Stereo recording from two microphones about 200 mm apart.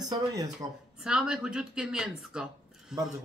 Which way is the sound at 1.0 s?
5° right (ahead or behind).